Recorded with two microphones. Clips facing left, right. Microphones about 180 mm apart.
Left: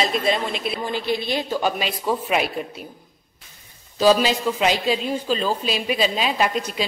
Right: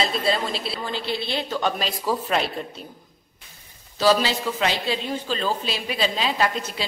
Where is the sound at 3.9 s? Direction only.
15° left (ahead or behind).